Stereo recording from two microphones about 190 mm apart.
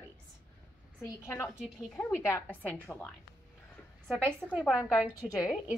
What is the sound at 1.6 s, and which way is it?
Speech, centre (ahead or behind).